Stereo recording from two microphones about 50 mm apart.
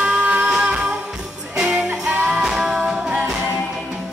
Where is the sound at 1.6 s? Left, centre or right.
Centre.